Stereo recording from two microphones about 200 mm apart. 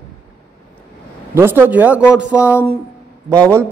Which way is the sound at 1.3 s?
10° right (ahead or behind).